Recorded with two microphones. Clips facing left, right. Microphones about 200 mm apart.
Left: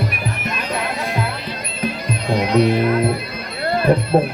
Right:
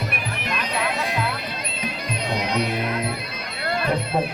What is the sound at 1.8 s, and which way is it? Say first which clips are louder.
Music: left 7 dB; 50° left (ahead or behind).